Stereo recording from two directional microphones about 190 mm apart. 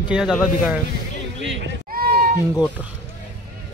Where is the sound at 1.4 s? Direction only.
70° right (ahead or behind).